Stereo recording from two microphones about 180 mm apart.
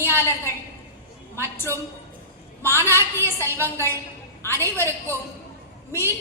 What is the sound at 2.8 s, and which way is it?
A woman's voice, 15° right (ahead or behind).